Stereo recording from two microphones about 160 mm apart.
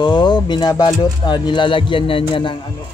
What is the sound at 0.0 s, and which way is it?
Speech, 30° left (ahead or behind).